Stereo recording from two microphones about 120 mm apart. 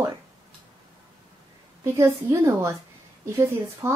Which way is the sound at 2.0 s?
20° right (ahead or behind).